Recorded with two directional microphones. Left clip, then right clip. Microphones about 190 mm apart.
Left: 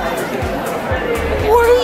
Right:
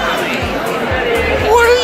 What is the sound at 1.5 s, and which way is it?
Music, 10° left (ahead or behind).